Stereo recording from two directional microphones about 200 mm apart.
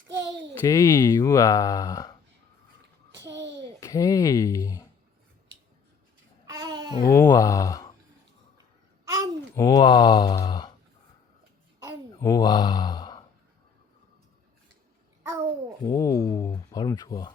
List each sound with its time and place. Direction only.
0.1 s a sound: 15° right (ahead or behind)
0.6 s speech: 15° left (ahead or behind)
3.8 s speech: 15° left (ahead or behind)
6.5 s a sound: 20° right (ahead or behind)
7.1 s speech: 15° left (ahead or behind)
9.0 s babbling: 15° right (ahead or behind)
9.6 s mantra: 20° left (ahead or behind)
12.2 s speech: 20° left (ahead or behind)
15.8 s speech: 15° left (ahead or behind)